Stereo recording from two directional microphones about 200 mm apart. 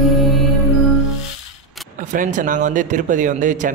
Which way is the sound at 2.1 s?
40° right (ahead or behind).